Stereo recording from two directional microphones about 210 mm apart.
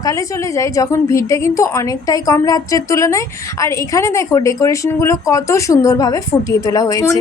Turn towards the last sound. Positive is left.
turn(degrees=15)  # may be behind; listen again after turning